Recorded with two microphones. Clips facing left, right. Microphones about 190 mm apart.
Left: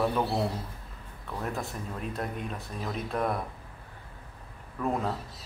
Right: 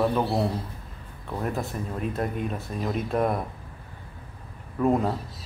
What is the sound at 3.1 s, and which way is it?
Speech, 15° right (ahead or behind).